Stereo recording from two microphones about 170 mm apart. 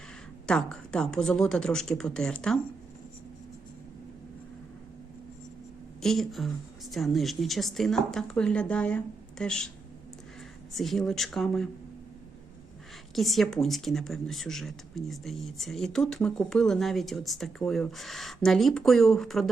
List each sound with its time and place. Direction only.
0.4 s speech: 5° left (ahead or behind)
6.0 s speech: centre (ahead or behind)
10.8 s speech: centre (ahead or behind)
13.1 s speech: centre (ahead or behind)